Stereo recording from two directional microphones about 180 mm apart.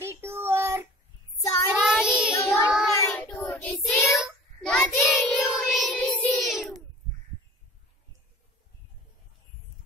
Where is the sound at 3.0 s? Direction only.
15° left (ahead or behind).